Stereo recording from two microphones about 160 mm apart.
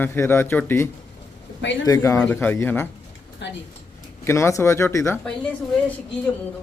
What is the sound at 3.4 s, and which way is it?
Speech, 90° left.